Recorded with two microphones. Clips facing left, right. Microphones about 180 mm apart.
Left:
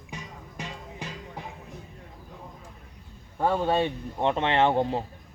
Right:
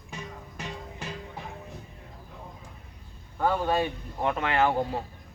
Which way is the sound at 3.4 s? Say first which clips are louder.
Left 1 dB; 25° left (ahead or behind).